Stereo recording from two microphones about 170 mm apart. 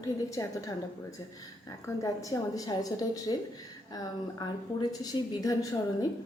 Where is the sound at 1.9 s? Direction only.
20° left (ahead or behind).